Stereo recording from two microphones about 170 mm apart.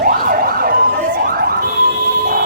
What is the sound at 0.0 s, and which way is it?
Emergency vehicle, 55° right (ahead or behind).